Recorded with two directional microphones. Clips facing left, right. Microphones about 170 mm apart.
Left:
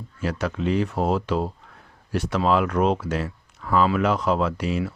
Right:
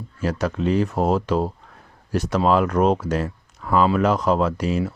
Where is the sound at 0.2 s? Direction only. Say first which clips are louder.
Right 3 dB; 40° right (ahead or behind).